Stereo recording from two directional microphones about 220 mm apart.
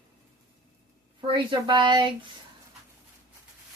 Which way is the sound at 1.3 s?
20° right (ahead or behind).